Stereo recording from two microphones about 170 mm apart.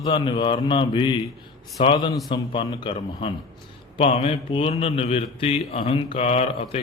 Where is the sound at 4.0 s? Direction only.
35° left (ahead or behind).